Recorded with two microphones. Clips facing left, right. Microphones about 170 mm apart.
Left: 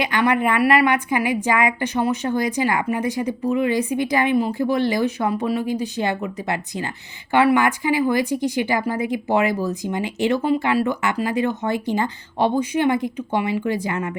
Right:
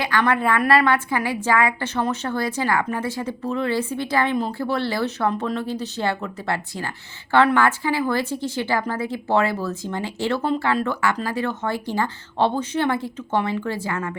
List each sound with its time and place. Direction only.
0.0 s a woman's voice: 15° left (ahead or behind)